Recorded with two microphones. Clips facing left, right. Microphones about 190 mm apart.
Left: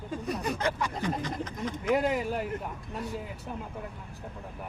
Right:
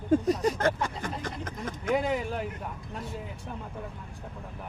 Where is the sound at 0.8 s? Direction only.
50° right (ahead or behind).